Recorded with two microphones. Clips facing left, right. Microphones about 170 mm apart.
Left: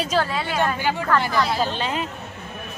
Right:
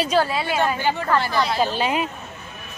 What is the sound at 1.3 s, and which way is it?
Speech, centre (ahead or behind).